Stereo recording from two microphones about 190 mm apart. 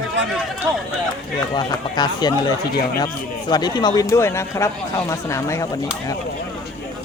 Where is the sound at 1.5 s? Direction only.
20° left (ahead or behind).